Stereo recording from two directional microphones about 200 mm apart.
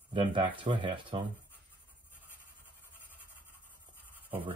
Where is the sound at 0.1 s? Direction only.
25° right (ahead or behind).